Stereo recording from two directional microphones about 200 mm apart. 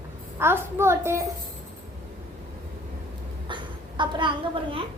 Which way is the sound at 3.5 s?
25° right (ahead or behind).